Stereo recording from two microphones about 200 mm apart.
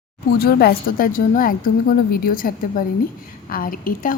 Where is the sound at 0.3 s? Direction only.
50° left (ahead or behind).